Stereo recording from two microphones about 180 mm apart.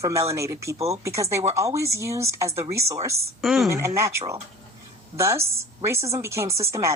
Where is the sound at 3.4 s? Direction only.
Centre (ahead or behind).